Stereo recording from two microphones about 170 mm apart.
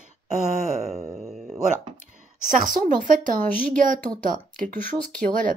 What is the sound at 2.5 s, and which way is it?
A woman's voice, 50° right (ahead or behind).